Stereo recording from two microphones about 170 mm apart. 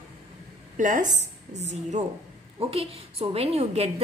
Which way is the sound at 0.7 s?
50° right (ahead or behind).